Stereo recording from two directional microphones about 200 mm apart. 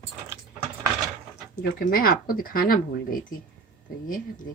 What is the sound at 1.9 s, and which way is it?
Speech, 45° left (ahead or behind).